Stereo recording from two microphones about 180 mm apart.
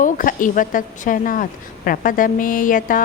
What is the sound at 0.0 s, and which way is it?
A woman's voice, 50° left (ahead or behind).